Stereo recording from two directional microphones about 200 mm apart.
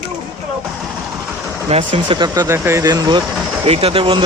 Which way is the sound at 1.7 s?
25° right (ahead or behind).